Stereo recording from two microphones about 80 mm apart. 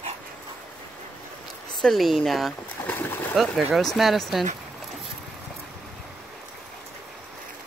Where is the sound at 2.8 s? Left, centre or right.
Left.